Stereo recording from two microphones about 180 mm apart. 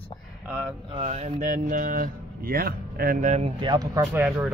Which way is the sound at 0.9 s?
35° right (ahead or behind).